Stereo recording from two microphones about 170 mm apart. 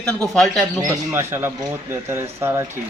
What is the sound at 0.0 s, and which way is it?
Speech, centre (ahead or behind).